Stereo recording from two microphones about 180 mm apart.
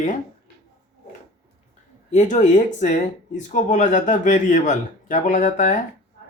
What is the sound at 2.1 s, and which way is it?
A man's voice, 40° left (ahead or behind).